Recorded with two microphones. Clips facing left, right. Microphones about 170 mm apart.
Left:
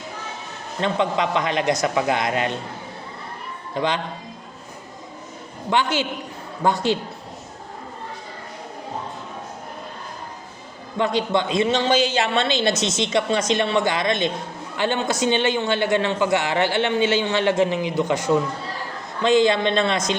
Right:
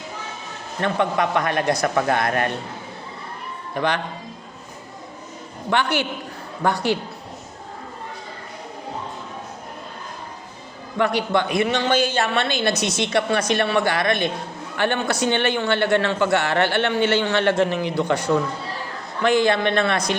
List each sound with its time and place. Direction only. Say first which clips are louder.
0.8 s a woman's voice: even; 20° left (ahead or behind)
3.8 s a woman's voice: even; 20° left (ahead or behind)
5.7 s a woman's voice: even; 20° left (ahead or behind)
10.9 s a woman's voice: right 1 dB; 20° left (ahead or behind)
11.9 s speech: left 1 dB; 55° right (ahead or behind)
12.2 s a woman's voice: left 1 dB; 20° left (ahead or behind)